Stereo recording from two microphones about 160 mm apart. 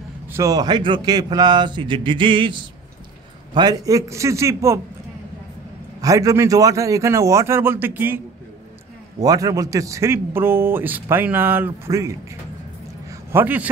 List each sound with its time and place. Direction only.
0.3 s speech: 20° right (ahead or behind)
5.9 s speech: 20° right (ahead or behind)
9.2 s a man's voice: 20° right (ahead or behind)
13.1 s a sound: 15° right (ahead or behind)